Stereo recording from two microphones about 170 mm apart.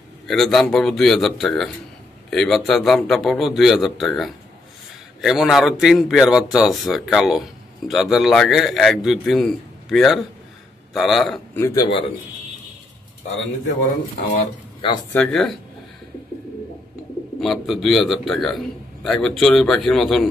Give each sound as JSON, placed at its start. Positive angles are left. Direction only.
{"t": 0.3, "sound": "a man's voice", "side_deg": 0}
{"t": 11.5, "sound": "speech", "side_deg": 20}
{"t": 14.8, "sound": "speech", "side_deg": 30}
{"t": 15.1, "sound": "a man's voice", "side_deg": 0}
{"t": 17.4, "sound": "a man's voice", "side_deg": 0}